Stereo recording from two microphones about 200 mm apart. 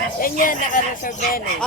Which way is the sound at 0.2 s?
45° left (ahead or behind).